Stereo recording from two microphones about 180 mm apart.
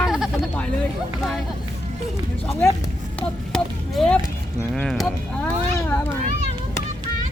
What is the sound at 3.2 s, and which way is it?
Speech, 5° left (ahead or behind).